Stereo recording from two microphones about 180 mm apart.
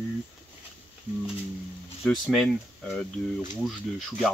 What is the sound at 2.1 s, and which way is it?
Speech, 5° left (ahead or behind).